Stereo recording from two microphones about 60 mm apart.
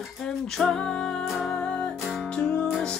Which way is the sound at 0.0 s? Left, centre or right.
Centre.